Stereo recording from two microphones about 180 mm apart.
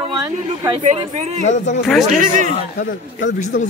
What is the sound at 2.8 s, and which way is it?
Speech, 65° left (ahead or behind).